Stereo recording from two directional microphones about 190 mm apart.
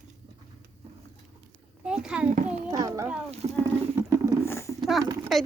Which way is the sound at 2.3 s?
40° right (ahead or behind).